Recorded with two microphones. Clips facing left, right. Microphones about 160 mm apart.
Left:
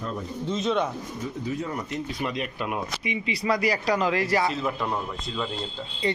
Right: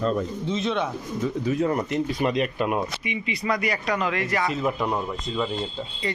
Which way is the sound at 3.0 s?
30° left (ahead or behind).